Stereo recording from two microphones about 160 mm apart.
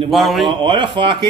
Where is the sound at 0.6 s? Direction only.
30° right (ahead or behind).